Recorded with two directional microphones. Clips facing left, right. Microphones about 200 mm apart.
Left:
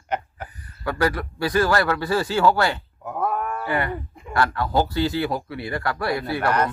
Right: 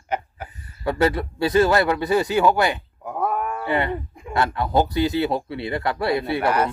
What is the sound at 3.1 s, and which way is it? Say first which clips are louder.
Livestock: right 1 dB; 10° right (ahead or behind).